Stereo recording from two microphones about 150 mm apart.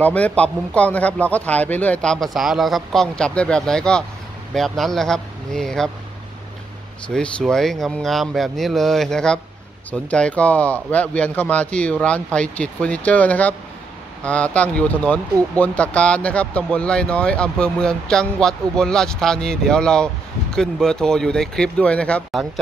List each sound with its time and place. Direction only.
0.0 s speech: 10° left (ahead or behind)
7.2 s speech: 5° left (ahead or behind)